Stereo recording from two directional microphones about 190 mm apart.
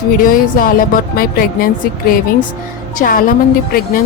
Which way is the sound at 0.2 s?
45° left (ahead or behind).